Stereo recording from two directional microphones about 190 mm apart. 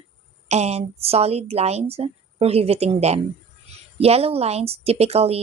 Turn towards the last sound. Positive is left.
turn(degrees=-35)  # may be behind; listen again after turning